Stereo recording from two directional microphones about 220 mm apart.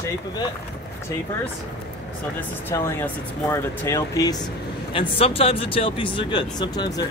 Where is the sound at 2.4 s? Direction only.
10° left (ahead or behind).